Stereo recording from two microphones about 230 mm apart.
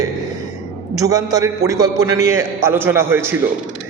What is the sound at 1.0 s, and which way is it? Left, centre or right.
A man's voice, centre.